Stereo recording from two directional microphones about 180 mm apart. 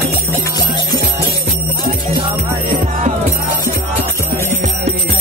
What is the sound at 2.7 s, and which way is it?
Music, 50° right (ahead or behind).